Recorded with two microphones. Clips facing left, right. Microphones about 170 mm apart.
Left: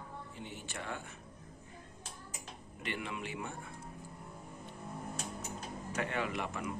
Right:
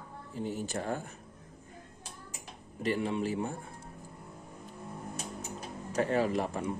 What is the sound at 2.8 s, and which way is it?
Speech, 35° right (ahead or behind).